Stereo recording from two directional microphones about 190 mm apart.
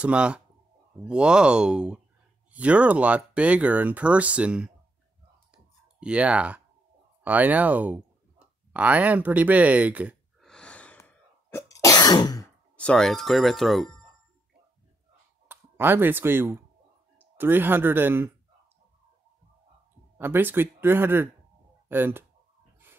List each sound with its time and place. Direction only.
0.0 s speech: 5° right (ahead or behind)
5.5 s clicking: 5° right (ahead or behind)
7.2 s speech: 10° right (ahead or behind)
10.5 s cough: 5° left (ahead or behind)
12.7 s speech: 5° left (ahead or behind)
15.4 s speech: 10° right (ahead or behind)
20.2 s speech: 10° right (ahead or behind)